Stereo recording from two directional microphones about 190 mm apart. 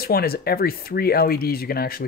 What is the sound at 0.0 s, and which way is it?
Speech, 55° left (ahead or behind).